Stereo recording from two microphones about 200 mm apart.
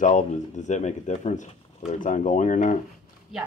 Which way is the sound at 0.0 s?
35° left (ahead or behind).